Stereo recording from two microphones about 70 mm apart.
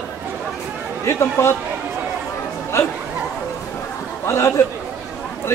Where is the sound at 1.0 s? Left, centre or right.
Left.